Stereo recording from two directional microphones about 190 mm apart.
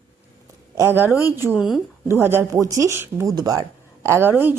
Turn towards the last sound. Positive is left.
turn(degrees=-10)  # may be behind; listen again after turning